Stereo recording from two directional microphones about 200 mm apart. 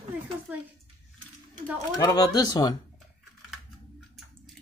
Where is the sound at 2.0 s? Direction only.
20° left (ahead or behind).